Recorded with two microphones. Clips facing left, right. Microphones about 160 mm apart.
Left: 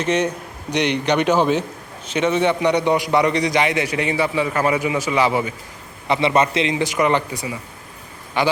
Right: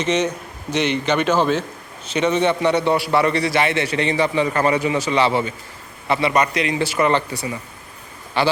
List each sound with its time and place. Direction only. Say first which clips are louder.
0.0 s a man's voice: even; 10° left (ahead or behind)